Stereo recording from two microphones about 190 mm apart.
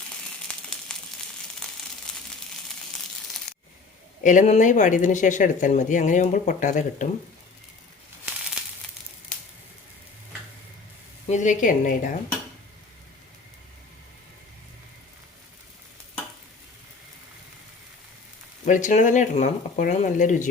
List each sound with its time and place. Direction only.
0.4 s a sound: 5° left (ahead or behind)
1.6 s crumpling: 5° left (ahead or behind)
2.1 s a sound: 5° left (ahead or behind)
4.2 s speech: 40° left (ahead or behind)
11.3 s a woman's voice: 45° left (ahead or behind)
18.6 s speech: 40° left (ahead or behind)